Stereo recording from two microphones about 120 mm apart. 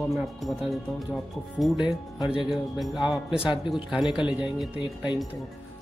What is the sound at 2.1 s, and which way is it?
Speech, 45° left (ahead or behind).